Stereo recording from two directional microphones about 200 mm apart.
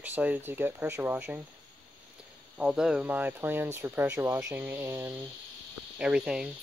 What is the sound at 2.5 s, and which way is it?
Speech, 5° right (ahead or behind).